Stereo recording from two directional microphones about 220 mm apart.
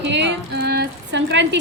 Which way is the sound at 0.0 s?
50° right (ahead or behind).